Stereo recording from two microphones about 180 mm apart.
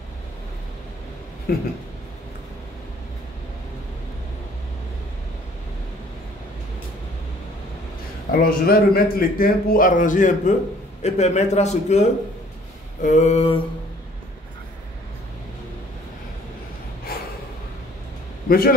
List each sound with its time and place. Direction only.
1.5 s speech: 60° left (ahead or behind)
8.3 s a man's voice: 55° left (ahead or behind); by 13.6 s 35° left (ahead or behind)